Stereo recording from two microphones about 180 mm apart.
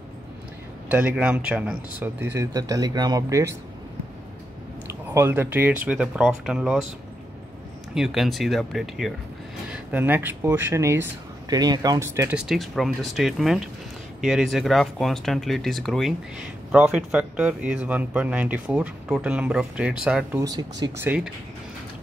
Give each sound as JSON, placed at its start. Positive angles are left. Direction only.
{"t": 0.8, "sound": "speech", "side_deg": -10}
{"t": 4.8, "sound": "speech", "side_deg": -15}
{"t": 7.9, "sound": "speech", "side_deg": 0}
{"t": 20.3, "sound": "speech", "side_deg": -20}
{"t": 21.0, "sound": "speech", "side_deg": -10}